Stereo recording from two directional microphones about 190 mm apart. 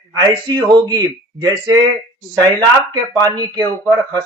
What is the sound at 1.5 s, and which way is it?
Speech, 20° right (ahead or behind).